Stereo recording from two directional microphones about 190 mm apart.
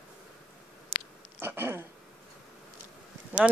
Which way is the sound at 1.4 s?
10° right (ahead or behind).